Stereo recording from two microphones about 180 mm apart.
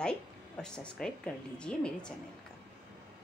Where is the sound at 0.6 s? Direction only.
5° left (ahead or behind).